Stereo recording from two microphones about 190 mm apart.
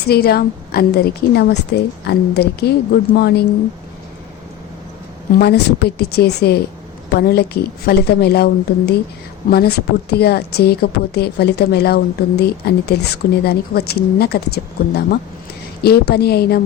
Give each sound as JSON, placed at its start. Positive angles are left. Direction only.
{"t": 0.1, "sound": "a woman's voice", "side_deg": 55}
{"t": 5.3, "sound": "a woman's voice", "side_deg": 60}
{"t": 9.5, "sound": "a woman's voice", "side_deg": 55}